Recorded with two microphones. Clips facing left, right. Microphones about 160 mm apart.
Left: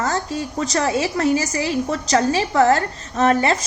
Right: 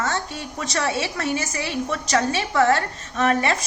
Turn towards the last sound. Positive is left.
turn(degrees=30)  # may be behind; listen again after turning